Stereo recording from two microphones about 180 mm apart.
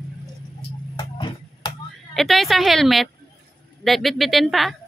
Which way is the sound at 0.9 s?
25° left (ahead or behind).